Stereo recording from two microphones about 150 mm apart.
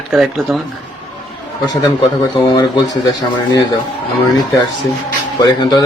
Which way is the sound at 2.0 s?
35° left (ahead or behind).